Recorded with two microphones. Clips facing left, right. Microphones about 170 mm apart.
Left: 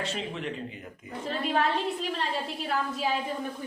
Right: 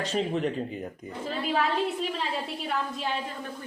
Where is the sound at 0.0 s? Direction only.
40° right (ahead or behind).